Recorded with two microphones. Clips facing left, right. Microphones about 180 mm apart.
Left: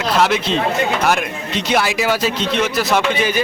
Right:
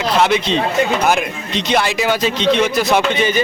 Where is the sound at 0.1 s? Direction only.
Centre (ahead or behind).